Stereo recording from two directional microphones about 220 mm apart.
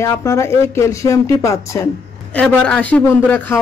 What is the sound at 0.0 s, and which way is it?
Speech, 15° left (ahead or behind).